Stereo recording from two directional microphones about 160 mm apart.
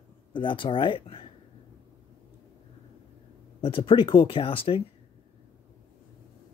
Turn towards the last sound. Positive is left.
turn(degrees=35)  # may be behind; listen again after turning